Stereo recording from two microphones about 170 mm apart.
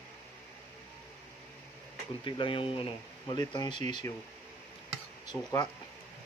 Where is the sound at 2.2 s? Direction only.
30° left (ahead or behind).